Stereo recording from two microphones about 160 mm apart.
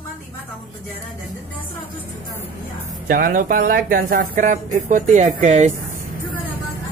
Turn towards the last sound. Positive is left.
turn(degrees=-45)  # may be behind; listen again after turning